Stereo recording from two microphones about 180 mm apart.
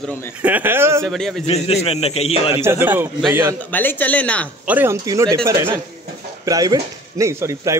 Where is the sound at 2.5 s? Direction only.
15° right (ahead or behind).